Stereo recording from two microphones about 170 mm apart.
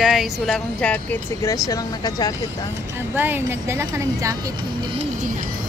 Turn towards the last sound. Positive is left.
turn(degrees=-20)  # may be behind; listen again after turning